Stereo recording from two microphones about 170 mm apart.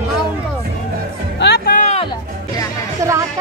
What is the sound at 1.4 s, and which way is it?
Music, 75° left (ahead or behind).